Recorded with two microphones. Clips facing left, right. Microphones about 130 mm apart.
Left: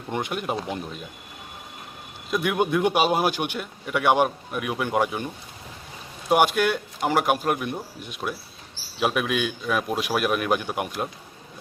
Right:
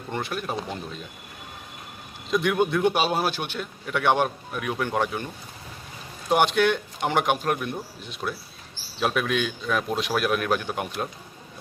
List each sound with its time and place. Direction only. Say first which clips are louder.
0.1 s a man's voice: left 2 dB; 15° left (ahead or behind)
2.3 s a man's voice: even; 5° left (ahead or behind)